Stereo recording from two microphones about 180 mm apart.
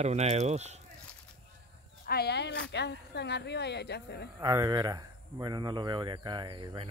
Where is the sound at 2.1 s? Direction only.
65° left (ahead or behind).